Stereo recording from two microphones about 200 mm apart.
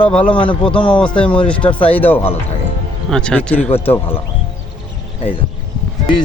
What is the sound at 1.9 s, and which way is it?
Speech, 10° left (ahead or behind).